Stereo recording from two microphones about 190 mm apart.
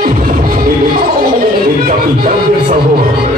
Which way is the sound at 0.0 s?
50° right (ahead or behind).